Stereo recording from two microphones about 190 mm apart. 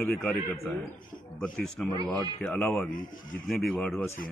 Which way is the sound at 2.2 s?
5° left (ahead or behind).